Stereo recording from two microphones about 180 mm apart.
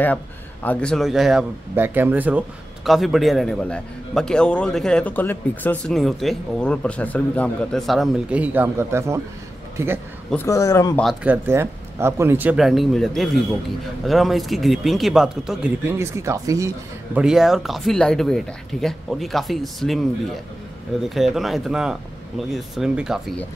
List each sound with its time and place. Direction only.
0.0 s a man's voice: 10° left (ahead or behind); by 9.9 s 15° right (ahead or behind)
10.3 s a man's voice: 15° left (ahead or behind)
11.2 s a man's voice: 15° right (ahead or behind)
15.9 s speech: 15° right (ahead or behind)
17.2 s a man's voice: 5° right (ahead or behind)
21.1 s a man's voice: centre (ahead or behind)